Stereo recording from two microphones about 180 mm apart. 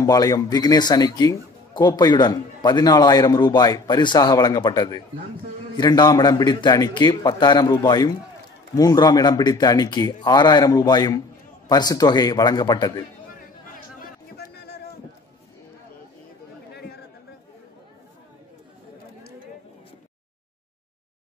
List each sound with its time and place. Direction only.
0.0 s speech: 20° left (ahead or behind)
14.3 s music: 65° left (ahead or behind)